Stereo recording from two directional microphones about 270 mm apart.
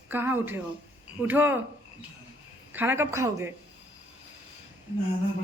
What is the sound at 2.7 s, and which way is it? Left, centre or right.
Speech, centre.